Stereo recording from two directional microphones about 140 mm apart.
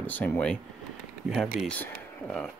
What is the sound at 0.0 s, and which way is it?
Speech, 15° left (ahead or behind).